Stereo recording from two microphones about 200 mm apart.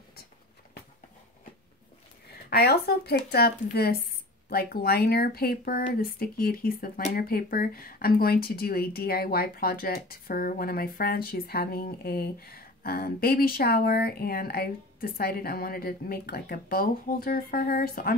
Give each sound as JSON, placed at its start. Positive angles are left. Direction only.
{"t": 2.5, "sound": "speech", "side_deg": 50}